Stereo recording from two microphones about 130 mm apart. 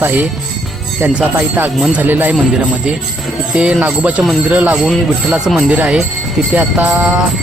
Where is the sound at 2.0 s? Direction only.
15° right (ahead or behind).